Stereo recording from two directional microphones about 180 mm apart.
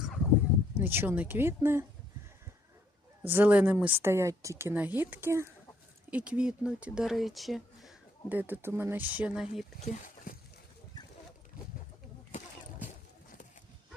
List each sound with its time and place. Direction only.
0.8 s speech: 10° right (ahead or behind)
3.2 s speech: 10° right (ahead or behind)
9.8 s speech: 40° left (ahead or behind)